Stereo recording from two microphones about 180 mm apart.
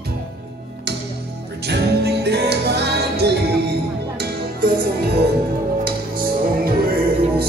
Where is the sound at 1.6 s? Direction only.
65° right (ahead or behind).